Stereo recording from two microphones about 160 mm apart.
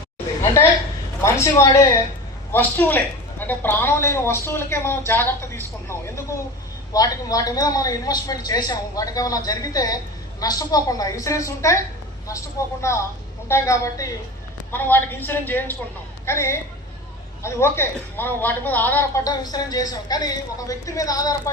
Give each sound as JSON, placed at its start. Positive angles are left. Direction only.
{"t": 1.2, "sound": "a woman's voice", "side_deg": 20}